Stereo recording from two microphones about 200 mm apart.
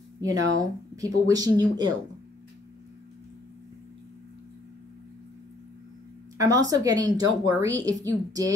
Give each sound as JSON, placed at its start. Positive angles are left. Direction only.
{"t": 0.2, "sound": "a woman's voice", "side_deg": -15}
{"t": 6.3, "sound": "a woman's voice", "side_deg": -15}